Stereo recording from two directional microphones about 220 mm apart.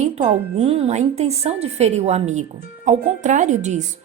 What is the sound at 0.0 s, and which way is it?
A woman's voice, 30° right (ahead or behind).